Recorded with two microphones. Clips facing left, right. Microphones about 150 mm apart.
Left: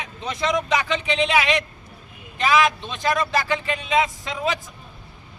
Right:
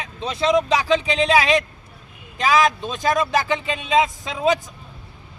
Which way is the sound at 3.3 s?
20° right (ahead or behind).